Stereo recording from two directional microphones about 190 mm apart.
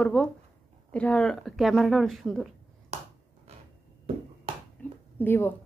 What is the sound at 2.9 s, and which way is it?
Finger snapping, 35° right (ahead or behind).